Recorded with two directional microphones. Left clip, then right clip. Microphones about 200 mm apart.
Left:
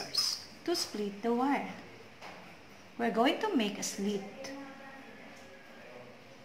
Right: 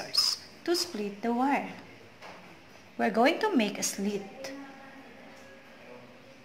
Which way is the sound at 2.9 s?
40° right (ahead or behind).